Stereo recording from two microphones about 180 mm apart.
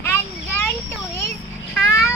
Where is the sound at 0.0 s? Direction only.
15° left (ahead or behind).